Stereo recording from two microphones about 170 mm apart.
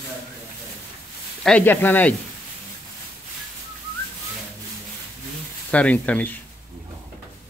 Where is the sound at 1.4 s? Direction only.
10° left (ahead or behind).